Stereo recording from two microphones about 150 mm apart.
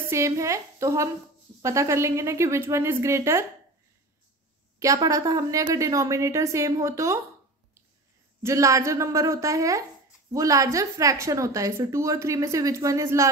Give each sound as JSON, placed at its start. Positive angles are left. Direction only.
{"t": 0.1, "sound": "a woman's voice", "side_deg": -20}
{"t": 4.7, "sound": "a woman's voice", "side_deg": -20}
{"t": 8.4, "sound": "a woman's voice", "side_deg": -20}